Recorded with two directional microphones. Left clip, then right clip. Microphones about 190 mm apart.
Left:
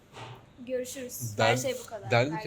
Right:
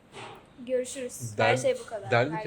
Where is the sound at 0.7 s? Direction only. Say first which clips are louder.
Right 4 dB; 15° left (ahead or behind).